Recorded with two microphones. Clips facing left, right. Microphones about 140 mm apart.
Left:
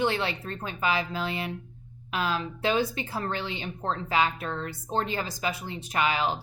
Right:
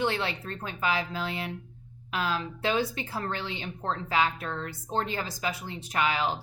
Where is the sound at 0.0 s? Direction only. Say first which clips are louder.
Left 2 dB; 20° left (ahead or behind).